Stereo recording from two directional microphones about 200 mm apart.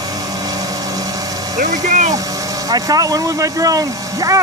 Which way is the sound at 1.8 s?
35° right (ahead or behind).